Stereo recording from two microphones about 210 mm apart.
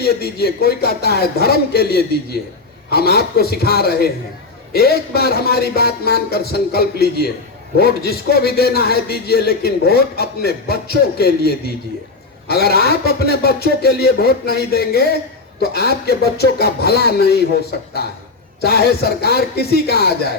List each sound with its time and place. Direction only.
0.0 s a man's voice: 50° left (ahead or behind)